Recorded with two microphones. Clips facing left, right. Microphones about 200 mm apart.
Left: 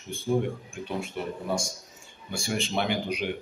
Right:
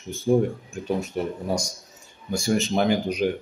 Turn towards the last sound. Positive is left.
turn(degrees=-45)  # may be behind; listen again after turning